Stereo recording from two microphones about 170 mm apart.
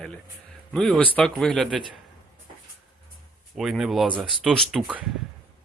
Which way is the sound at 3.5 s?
Centre (ahead or behind).